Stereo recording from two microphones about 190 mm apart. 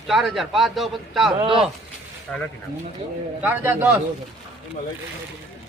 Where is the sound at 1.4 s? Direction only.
25° right (ahead or behind).